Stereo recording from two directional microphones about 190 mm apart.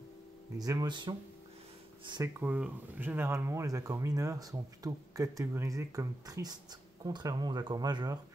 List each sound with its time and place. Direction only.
0.6 s speech: 20° right (ahead or behind)
2.4 s speech: 10° right (ahead or behind)